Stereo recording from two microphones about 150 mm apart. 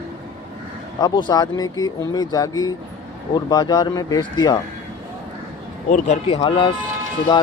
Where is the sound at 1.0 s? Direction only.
30° left (ahead or behind).